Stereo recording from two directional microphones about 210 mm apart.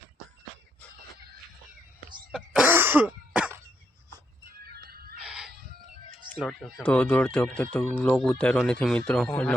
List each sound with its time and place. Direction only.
2.3 s throat clearing: 5° right (ahead or behind)
4.6 s music: 45° right (ahead or behind)
5.2 s chicken: 5° right (ahead or behind)
6.4 s speech: centre (ahead or behind)